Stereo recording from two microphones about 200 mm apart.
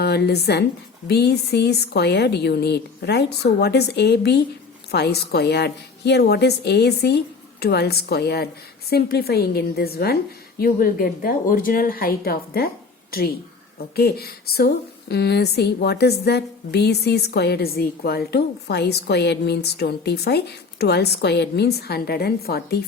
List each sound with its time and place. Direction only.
0.0 s a woman's voice: 55° left (ahead or behind)